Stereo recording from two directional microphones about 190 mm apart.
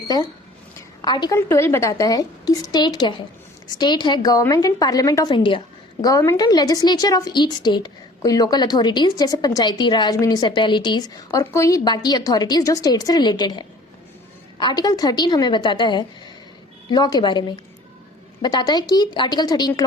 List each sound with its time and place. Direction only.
1.0 s a woman's voice: 20° left (ahead or behind)
1.4 s a woman's voice: 10° left (ahead or behind)
18.4 s a woman's voice: 20° left (ahead or behind)